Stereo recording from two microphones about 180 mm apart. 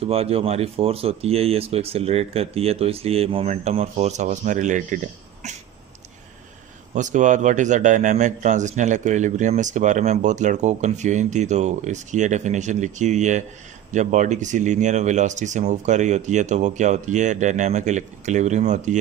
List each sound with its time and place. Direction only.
0.0 s a man's voice: 35° right (ahead or behind)
6.9 s a man's voice: 45° right (ahead or behind)